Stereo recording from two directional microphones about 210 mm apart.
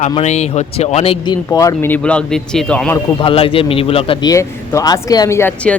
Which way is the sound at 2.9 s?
25° left (ahead or behind).